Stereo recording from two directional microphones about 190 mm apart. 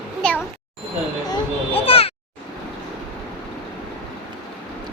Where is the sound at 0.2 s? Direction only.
5° left (ahead or behind).